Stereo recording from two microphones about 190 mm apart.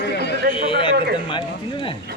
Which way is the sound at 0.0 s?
60° left (ahead or behind).